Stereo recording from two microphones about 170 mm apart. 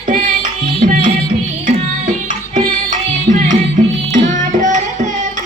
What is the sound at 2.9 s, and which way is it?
Music, 45° right (ahead or behind).